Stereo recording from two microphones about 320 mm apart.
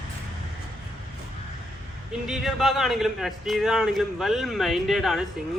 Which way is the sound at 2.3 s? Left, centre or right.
Centre.